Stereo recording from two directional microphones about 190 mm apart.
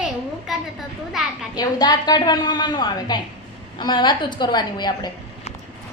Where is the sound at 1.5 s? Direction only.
20° left (ahead or behind).